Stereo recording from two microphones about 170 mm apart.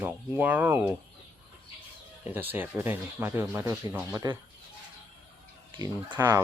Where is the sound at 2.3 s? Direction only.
10° right (ahead or behind).